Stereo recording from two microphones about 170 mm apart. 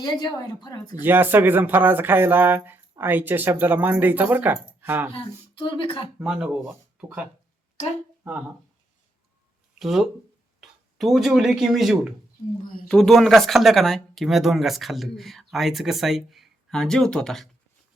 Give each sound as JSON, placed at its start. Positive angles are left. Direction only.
{"t": 0.0, "sound": "a woman's voice", "side_deg": 25}
{"t": 0.9, "sound": "speech", "side_deg": -10}
{"t": 5.1, "sound": "speech", "side_deg": 30}
{"t": 6.1, "sound": "speech", "side_deg": -5}
{"t": 9.7, "sound": "speech", "side_deg": 0}